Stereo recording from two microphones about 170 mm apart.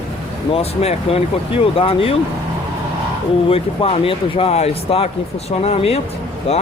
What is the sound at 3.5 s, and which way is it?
Speech, 35° left (ahead or behind).